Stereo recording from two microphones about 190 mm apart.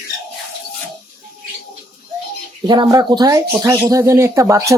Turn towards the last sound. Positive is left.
turn(degrees=-15)  # may be behind; listen again after turning